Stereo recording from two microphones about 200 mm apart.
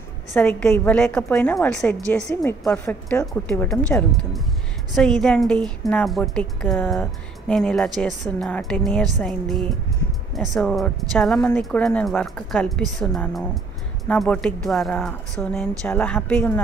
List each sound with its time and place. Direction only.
0.3 s a woman's voice: 5° left (ahead or behind)
5.2 s a woman's voice: 5° left (ahead or behind)